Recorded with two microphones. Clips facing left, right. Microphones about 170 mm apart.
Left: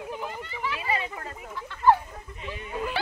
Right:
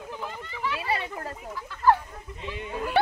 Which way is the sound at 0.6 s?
Centre (ahead or behind).